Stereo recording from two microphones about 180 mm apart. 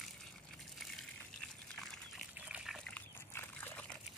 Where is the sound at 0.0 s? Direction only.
Centre (ahead or behind).